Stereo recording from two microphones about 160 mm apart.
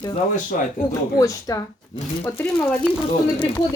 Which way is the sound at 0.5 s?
60° left (ahead or behind).